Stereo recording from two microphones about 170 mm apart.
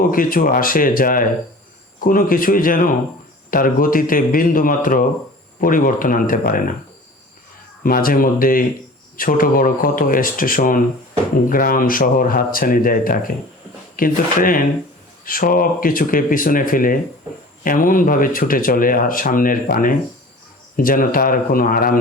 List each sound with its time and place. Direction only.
0.0 s speech: 55° left (ahead or behind)
7.9 s speech: 60° left (ahead or behind)